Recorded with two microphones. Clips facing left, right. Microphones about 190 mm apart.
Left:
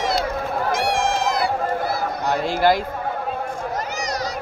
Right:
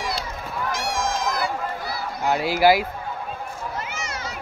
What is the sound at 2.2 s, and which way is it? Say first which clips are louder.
Speech: right 1 dB; 10° right (ahead or behind).